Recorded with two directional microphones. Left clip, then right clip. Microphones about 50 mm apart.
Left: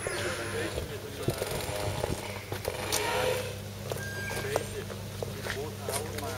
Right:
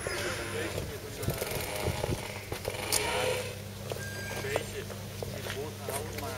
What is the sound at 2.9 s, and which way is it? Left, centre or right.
Vehicle, centre.